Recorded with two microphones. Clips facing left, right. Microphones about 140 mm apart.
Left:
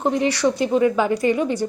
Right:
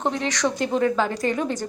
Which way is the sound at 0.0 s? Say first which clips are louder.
Left 5 dB; 10° left (ahead or behind).